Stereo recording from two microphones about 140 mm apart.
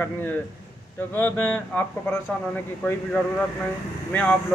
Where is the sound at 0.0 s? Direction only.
15° left (ahead or behind).